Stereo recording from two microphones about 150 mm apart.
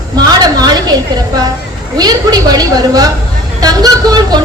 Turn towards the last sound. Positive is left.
turn(degrees=-25)  # may be behind; listen again after turning